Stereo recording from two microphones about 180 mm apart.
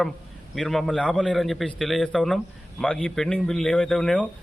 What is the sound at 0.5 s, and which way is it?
A man's voice, centre (ahead or behind).